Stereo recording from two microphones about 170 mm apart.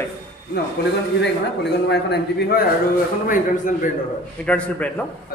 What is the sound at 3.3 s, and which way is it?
Speech, 50° left (ahead or behind).